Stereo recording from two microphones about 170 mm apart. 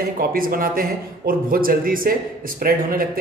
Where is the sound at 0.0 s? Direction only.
60° right (ahead or behind).